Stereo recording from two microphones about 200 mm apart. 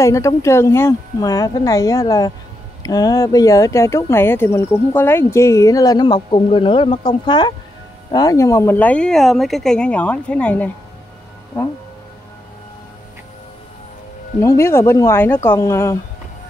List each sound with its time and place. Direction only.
0.0 s speech: 15° left (ahead or behind)
14.4 s speech: 15° left (ahead or behind)